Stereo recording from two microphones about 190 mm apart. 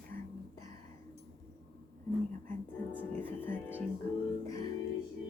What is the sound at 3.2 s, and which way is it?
Speech, 10° left (ahead or behind).